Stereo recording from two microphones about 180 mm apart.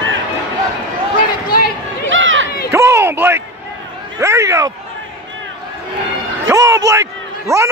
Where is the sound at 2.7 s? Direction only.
15° right (ahead or behind).